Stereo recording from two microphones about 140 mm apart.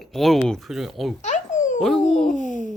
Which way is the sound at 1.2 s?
60° left (ahead or behind).